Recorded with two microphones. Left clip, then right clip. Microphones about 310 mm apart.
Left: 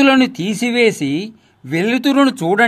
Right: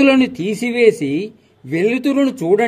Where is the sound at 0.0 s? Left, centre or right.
Left.